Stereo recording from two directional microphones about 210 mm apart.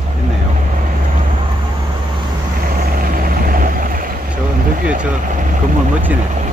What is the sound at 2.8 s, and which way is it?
Vehicle, 45° right (ahead or behind).